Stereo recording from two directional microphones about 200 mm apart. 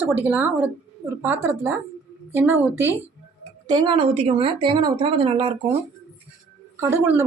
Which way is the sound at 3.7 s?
25° right (ahead or behind).